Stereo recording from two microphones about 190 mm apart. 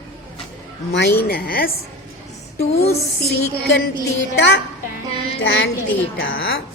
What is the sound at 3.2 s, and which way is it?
A woman's voice, 60° left (ahead or behind).